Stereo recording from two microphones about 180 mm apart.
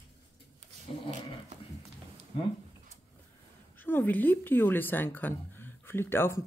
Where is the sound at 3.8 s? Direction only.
10° left (ahead or behind).